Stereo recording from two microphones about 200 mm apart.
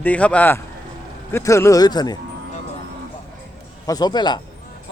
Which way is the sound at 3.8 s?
20° left (ahead or behind).